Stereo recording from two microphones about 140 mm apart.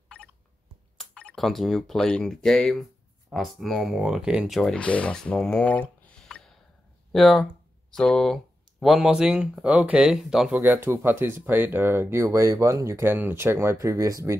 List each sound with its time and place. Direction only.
0.9 s speech: 5° left (ahead or behind)
10.6 s speech: 15° right (ahead or behind)